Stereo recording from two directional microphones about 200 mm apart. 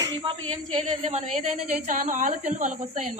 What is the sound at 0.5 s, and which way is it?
A woman's voice, 35° right (ahead or behind).